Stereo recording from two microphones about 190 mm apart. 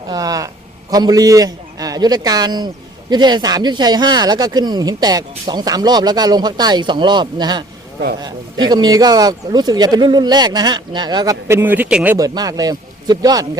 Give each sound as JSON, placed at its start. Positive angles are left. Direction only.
{"t": 0.1, "sound": "a man's voice", "side_deg": -20}
{"t": 12.1, "sound": "speech", "side_deg": -20}